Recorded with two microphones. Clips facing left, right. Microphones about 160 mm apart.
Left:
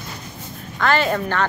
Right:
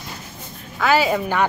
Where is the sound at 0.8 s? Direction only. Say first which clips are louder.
Right 1 dB; 5° right (ahead or behind).